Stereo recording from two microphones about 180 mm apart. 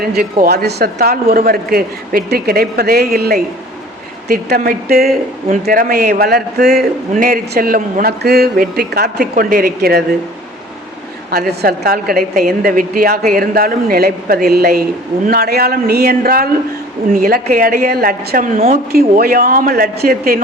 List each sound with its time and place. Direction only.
0.0 s a woman's voice: 55° right (ahead or behind)
11.3 s a woman's voice: 60° right (ahead or behind)